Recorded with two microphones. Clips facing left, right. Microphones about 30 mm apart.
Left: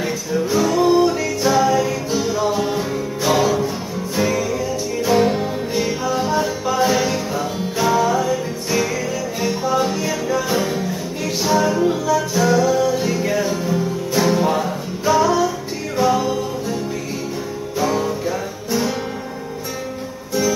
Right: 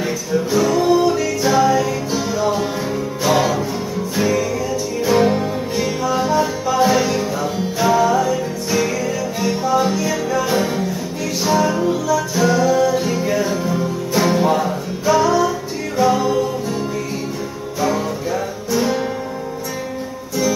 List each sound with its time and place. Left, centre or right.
0.0 s music: centre
0.8 s music: centre
1.4 s music: centre
10.0 s music: centre
11.9 s music: centre
12.4 s music: centre